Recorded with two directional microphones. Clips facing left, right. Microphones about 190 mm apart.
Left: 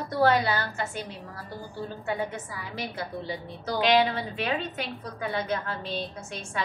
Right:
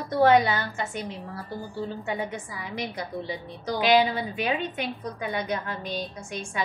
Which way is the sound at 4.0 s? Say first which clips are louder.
Right 1 dB; 15° right (ahead or behind).